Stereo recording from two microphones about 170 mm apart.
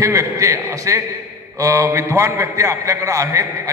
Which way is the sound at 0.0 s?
20° right (ahead or behind).